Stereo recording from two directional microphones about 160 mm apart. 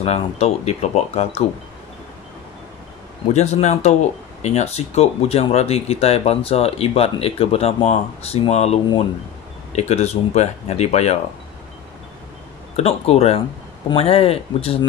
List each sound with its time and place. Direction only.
0.0 s speech: 40° left (ahead or behind)
3.3 s speech: 45° left (ahead or behind)
12.7 s speech: 40° left (ahead or behind)